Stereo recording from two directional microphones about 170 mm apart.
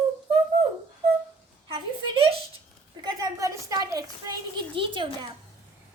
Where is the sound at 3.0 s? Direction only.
25° right (ahead or behind).